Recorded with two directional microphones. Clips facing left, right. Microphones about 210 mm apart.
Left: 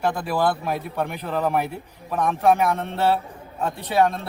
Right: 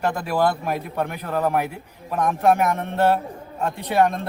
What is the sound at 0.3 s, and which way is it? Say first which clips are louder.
A man's voice: right 1 dB; 10° right (ahead or behind).